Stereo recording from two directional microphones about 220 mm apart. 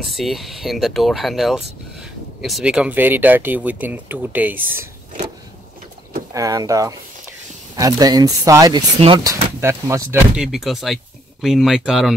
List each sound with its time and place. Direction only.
0.0 s speech: centre (ahead or behind)
6.3 s speech: 15° right (ahead or behind)